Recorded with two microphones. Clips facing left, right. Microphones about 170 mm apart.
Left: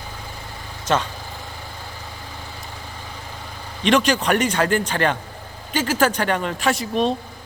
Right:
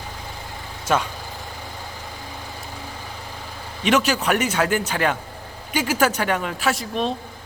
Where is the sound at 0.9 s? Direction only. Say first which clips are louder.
Even; 5° right (ahead or behind).